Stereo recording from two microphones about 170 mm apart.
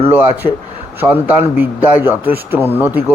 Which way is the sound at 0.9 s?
10° right (ahead or behind).